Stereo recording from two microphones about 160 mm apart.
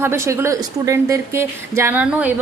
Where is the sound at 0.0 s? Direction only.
15° right (ahead or behind).